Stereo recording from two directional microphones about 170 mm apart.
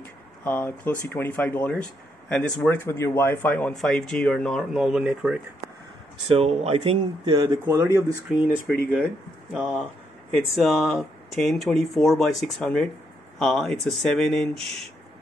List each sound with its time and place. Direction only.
0.0 s a sound: 10° left (ahead or behind)
1.0 s speech: 10° left (ahead or behind); by 5.4 s 5° right (ahead or behind)
6.2 s speech: 35° right (ahead or behind)
7.6 s speech: 15° right (ahead or behind)
9.5 s speech: centre (ahead or behind)